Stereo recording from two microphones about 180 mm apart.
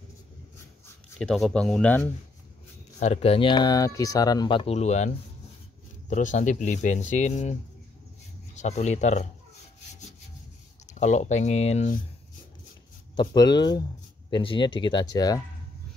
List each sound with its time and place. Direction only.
1.2 s speech: 5° left (ahead or behind)
3.0 s speech: 35° left (ahead or behind)
8.5 s speech: 40° left (ahead or behind)
10.9 s speech: 40° left (ahead or behind)
13.1 s speech: 25° left (ahead or behind)